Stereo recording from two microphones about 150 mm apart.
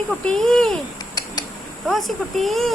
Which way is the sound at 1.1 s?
25° left (ahead or behind).